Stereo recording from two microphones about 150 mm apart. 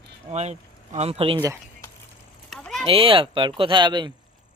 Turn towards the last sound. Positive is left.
turn(degrees=-30)  # may be behind; listen again after turning